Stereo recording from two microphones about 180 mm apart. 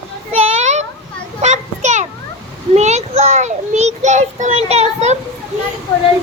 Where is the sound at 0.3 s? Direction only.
35° right (ahead or behind).